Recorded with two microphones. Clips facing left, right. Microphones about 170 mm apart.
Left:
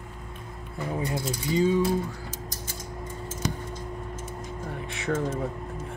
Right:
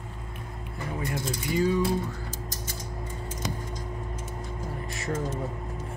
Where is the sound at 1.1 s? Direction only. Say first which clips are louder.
Left 2 dB; 20° left (ahead or behind).